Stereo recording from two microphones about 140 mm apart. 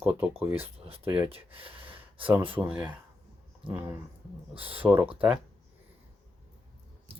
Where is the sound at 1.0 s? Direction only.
15° right (ahead or behind).